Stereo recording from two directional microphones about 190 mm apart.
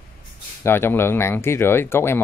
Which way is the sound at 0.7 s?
10° left (ahead or behind).